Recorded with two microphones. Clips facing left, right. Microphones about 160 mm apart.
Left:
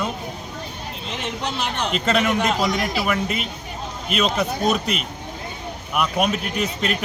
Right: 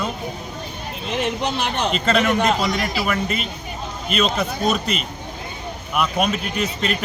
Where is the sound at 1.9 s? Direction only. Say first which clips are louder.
Right 1 dB; 5° left (ahead or behind).